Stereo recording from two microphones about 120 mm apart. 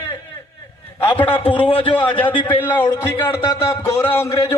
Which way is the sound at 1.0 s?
15° left (ahead or behind).